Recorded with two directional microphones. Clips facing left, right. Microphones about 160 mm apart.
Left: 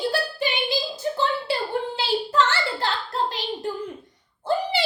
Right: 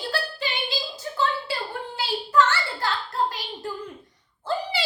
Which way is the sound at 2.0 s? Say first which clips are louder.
Right 2 dB; 25° left (ahead or behind).